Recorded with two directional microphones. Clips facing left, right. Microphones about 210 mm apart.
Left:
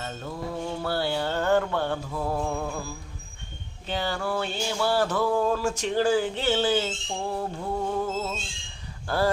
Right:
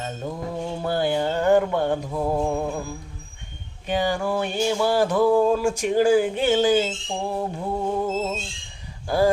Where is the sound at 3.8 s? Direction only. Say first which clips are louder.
Right 6 dB; 15° right (ahead or behind).